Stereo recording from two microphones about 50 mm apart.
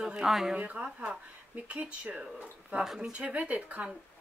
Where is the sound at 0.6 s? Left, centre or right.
Right.